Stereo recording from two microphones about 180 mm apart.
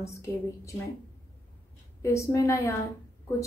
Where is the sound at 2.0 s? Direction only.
15° left (ahead or behind).